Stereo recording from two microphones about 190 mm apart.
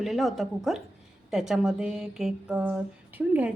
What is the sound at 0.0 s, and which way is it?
Speech, centre (ahead or behind).